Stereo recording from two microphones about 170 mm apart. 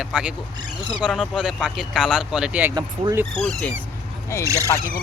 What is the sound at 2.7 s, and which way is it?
Speech, 25° right (ahead or behind).